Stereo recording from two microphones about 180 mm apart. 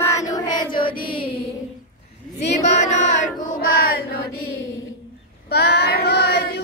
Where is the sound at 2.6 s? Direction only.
40° left (ahead or behind).